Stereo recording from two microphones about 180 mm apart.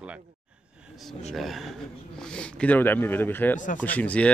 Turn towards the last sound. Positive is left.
turn(degrees=10)  # may be behind; listen again after turning